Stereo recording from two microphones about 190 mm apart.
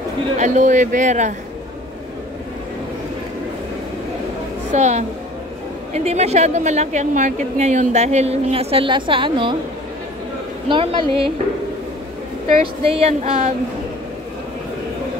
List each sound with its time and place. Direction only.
0.4 s a woman's voice: 40° right (ahead or behind)
4.7 s a woman's voice: 35° right (ahead or behind)
10.7 s a woman's voice: 25° right (ahead or behind)
12.8 s a woman's voice: 30° right (ahead or behind)